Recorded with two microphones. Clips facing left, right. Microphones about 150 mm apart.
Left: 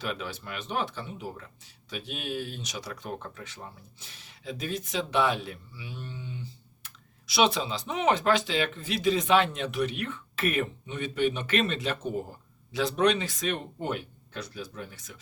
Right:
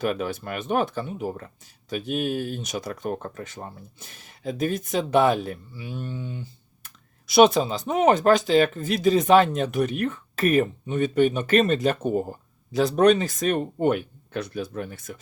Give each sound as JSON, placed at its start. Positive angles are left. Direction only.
{"t": 0.0, "sound": "speech", "side_deg": -50}